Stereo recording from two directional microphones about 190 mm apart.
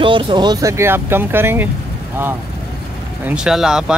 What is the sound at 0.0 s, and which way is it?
Speech, 25° right (ahead or behind).